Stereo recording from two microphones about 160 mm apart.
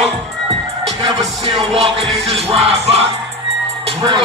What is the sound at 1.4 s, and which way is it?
Music, 35° right (ahead or behind).